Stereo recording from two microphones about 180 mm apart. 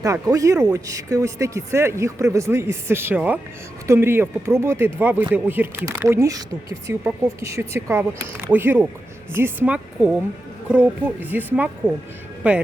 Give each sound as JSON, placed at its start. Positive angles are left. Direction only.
{"t": 0.0, "sound": "speech", "side_deg": -20}
{"t": 12.4, "sound": "speech", "side_deg": -5}